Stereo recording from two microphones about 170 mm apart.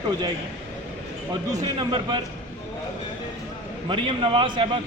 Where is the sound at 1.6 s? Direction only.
25° right (ahead or behind).